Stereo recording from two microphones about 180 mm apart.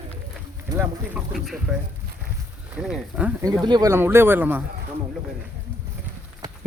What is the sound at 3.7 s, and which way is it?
Speech, 20° right (ahead or behind).